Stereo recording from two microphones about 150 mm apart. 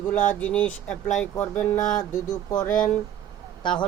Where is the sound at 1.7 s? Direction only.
55° left (ahead or behind).